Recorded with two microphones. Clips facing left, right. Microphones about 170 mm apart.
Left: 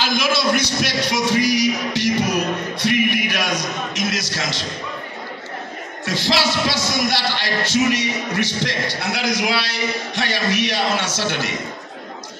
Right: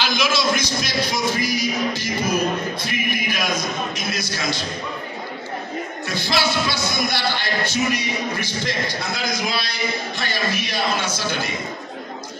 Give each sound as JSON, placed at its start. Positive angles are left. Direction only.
{"t": 0.0, "sound": "music", "side_deg": 55}
{"t": 6.0, "sound": "music", "side_deg": 85}
{"t": 11.1, "sound": "a man's voice", "side_deg": 75}